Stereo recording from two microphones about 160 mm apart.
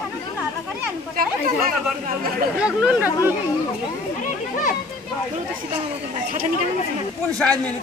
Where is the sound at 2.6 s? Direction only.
5° right (ahead or behind).